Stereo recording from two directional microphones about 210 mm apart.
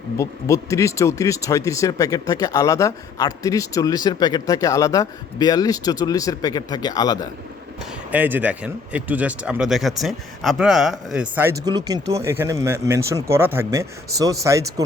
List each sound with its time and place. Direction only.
0.2 s speech: 15° left (ahead or behind)
8.1 s speech: 10° right (ahead or behind)
11.6 s speech: 20° right (ahead or behind)